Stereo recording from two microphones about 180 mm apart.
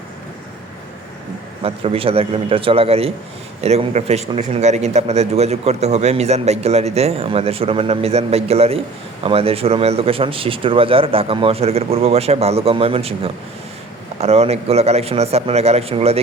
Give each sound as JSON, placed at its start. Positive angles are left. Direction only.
{"t": 1.6, "sound": "speech", "side_deg": -30}